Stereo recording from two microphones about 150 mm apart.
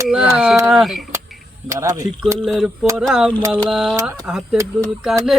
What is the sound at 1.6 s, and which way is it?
Speech, 20° right (ahead or behind).